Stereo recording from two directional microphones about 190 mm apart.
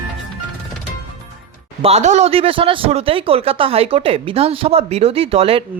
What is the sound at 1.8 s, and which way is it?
A man's voice, 35° right (ahead or behind).